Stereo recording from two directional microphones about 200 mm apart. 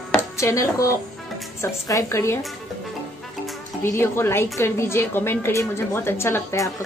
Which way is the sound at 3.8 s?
10° left (ahead or behind).